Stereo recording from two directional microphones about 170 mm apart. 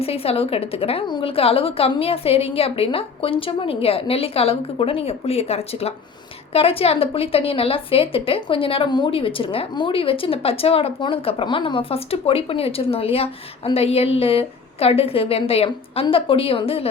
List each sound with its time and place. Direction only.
0.0 s a woman's voice: 35° left (ahead or behind)